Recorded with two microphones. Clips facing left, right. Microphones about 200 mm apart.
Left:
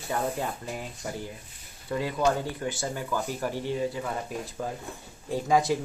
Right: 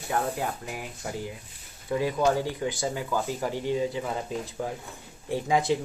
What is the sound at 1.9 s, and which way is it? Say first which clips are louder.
Speech: right 2 dB; 15° right (ahead or behind).